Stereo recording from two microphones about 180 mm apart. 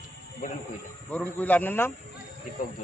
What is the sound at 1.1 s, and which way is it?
Speech, 10° left (ahead or behind).